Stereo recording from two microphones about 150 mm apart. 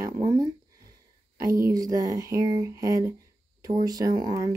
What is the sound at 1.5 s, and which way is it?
Speech, 20° right (ahead or behind).